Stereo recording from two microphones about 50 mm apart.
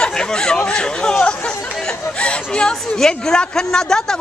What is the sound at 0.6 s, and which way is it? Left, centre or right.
Speech, centre.